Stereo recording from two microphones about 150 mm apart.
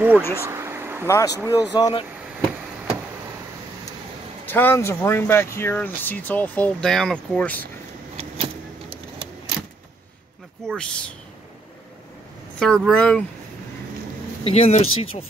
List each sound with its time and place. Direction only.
0.1 s speech: 15° left (ahead or behind)
0.5 s a sound: 15° right (ahead or behind)
1.0 s speech: 20° left (ahead or behind)
4.5 s speech: 15° left (ahead or behind)
10.8 s speech: 5° left (ahead or behind)
12.5 s speech: 5° left (ahead or behind)
14.4 s speech: 45° left (ahead or behind)